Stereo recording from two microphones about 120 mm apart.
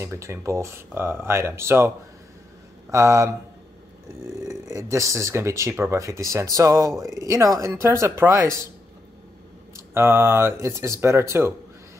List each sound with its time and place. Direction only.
0.0 s speech: 25° right (ahead or behind)
2.9 s speech: 25° right (ahead or behind)
4.4 s speech: 25° right (ahead or behind)
9.8 s speech: 20° right (ahead or behind)